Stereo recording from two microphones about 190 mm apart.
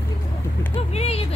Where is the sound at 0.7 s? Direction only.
30° left (ahead or behind).